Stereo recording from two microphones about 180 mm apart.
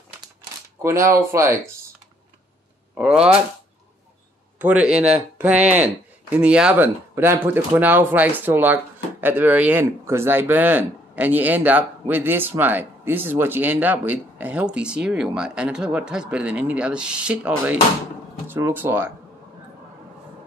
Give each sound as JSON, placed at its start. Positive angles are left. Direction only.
{"t": 0.8, "sound": "speech", "side_deg": -15}
{"t": 2.9, "sound": "speech", "side_deg": -5}
{"t": 4.6, "sound": "speech", "side_deg": -5}